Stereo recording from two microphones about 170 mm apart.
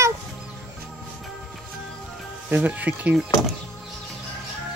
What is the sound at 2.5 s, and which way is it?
Speech, 10° right (ahead or behind).